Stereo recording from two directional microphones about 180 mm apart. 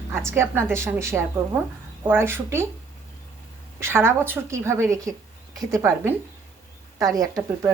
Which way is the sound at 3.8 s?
15° right (ahead or behind).